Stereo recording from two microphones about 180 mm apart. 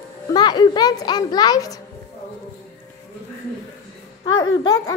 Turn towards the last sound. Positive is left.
turn(degrees=20)  # may be behind; listen again after turning